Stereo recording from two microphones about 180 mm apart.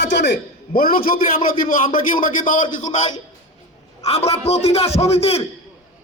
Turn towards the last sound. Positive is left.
turn(degrees=35)  # may be behind; listen again after turning